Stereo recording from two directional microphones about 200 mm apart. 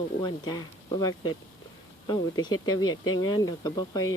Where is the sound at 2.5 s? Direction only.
90° left.